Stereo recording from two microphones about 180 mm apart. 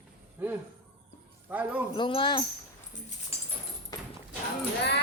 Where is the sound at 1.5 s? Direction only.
10° right (ahead or behind).